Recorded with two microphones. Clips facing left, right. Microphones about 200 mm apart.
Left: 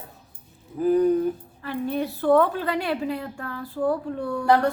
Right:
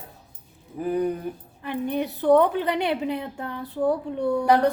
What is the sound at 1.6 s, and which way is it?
A woman's voice, 20° right (ahead or behind).